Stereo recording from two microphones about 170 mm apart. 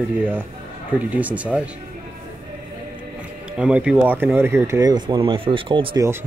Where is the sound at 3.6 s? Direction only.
5° right (ahead or behind); by 6.0 s 30° right (ahead or behind).